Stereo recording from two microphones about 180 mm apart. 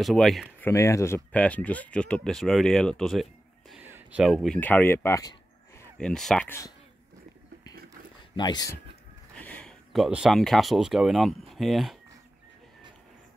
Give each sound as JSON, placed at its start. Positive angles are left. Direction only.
{"t": 0.0, "sound": "speech", "side_deg": 0}
{"t": 0.7, "sound": "speech", "side_deg": 15}
{"t": 3.7, "sound": "a sound", "side_deg": -10}
{"t": 4.2, "sound": "speech", "side_deg": 0}
{"t": 4.6, "sound": "speech", "side_deg": 10}
{"t": 5.9, "sound": "speech", "side_deg": 5}
{"t": 8.4, "sound": "speech", "side_deg": 25}
{"t": 9.4, "sound": "speech", "side_deg": 5}